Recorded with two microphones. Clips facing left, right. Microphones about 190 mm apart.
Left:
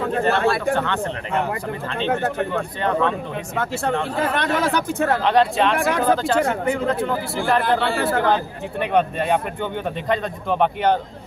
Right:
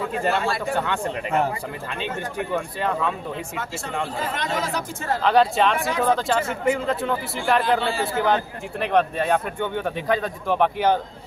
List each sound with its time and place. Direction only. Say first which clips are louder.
0.0 s speech: left 4 dB; 60° left (ahead or behind)
2.0 s speech: left 6 dB; 60° left (ahead or behind)
2.8 s speech: left 6 dB; 5° right (ahead or behind)
3.5 s speech: left 7 dB; 60° left (ahead or behind)
5.2 s speech: right 2 dB; centre (ahead or behind)
7.6 s speech: left 2 dB; 60° left (ahead or behind)
8.9 s speech: left 1 dB; centre (ahead or behind)